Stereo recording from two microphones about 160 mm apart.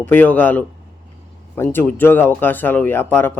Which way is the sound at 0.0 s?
10° left (ahead or behind).